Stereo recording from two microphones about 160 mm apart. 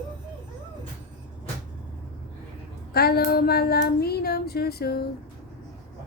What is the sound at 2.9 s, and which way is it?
Female singing, 75° left (ahead or behind).